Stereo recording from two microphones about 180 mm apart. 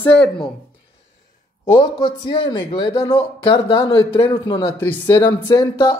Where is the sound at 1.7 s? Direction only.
30° left (ahead or behind).